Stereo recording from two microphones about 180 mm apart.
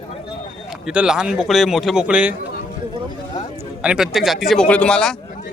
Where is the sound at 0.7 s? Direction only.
5° right (ahead or behind).